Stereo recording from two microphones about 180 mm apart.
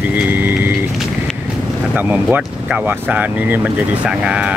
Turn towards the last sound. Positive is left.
turn(degrees=-5)  # may be behind; listen again after turning